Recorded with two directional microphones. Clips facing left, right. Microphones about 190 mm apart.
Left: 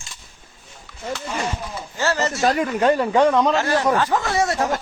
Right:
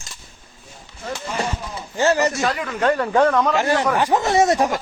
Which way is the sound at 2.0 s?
15° right (ahead or behind).